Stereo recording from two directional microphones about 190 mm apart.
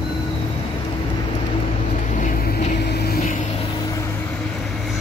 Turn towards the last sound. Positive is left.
turn(degrees=60)  # may be behind; listen again after turning